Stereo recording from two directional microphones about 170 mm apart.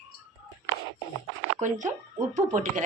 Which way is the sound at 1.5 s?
45° right (ahead or behind).